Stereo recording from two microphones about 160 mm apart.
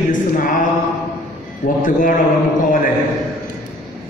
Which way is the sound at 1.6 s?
55° left (ahead or behind).